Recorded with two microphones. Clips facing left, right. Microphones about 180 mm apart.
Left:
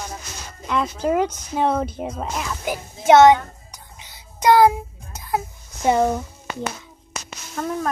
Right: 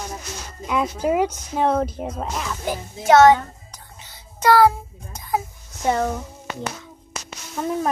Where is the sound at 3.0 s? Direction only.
20° left (ahead or behind).